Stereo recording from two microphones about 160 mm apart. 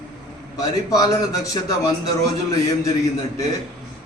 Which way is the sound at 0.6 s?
25° left (ahead or behind).